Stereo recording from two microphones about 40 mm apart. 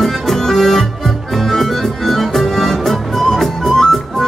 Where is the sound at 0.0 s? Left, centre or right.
Centre.